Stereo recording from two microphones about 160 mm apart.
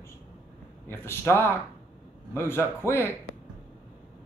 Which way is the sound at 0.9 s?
15° left (ahead or behind).